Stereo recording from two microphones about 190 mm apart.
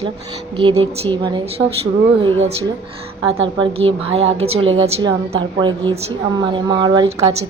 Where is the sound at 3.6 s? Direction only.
30° right (ahead or behind).